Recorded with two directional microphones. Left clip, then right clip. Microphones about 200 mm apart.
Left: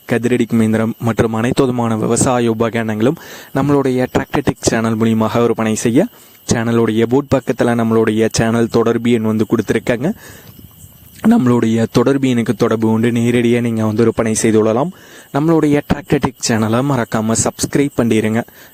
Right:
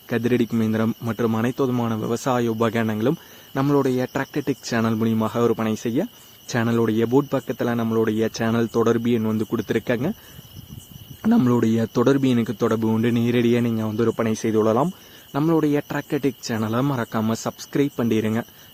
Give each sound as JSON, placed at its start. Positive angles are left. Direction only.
{"t": 0.1, "sound": "speech", "side_deg": 45}
{"t": 11.2, "sound": "speech", "side_deg": 45}